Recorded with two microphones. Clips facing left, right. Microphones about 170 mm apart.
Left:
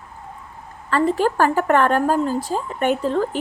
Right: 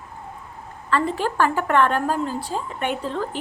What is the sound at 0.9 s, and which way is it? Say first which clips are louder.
A woman's voice: left 4 dB; 40° left (ahead or behind).